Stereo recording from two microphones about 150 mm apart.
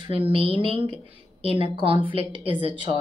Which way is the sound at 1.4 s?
45° left (ahead or behind).